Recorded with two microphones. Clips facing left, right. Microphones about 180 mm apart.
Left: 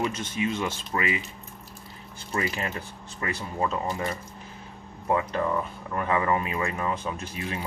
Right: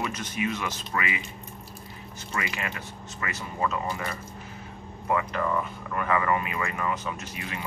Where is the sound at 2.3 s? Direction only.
30° left (ahead or behind).